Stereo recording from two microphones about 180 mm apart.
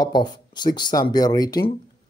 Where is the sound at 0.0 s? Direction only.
25° left (ahead or behind).